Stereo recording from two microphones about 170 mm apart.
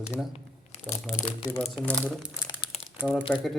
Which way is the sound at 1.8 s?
10° left (ahead or behind).